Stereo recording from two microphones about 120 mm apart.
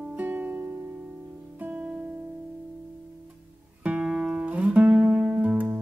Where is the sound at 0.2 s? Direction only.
15° right (ahead or behind).